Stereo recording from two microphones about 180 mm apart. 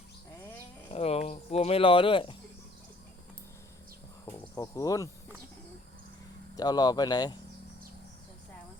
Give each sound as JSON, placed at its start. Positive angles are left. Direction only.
{"t": 0.9, "sound": "a sound", "side_deg": 35}
{"t": 4.3, "sound": "cricket", "side_deg": 15}
{"t": 6.6, "sound": "speech", "side_deg": 20}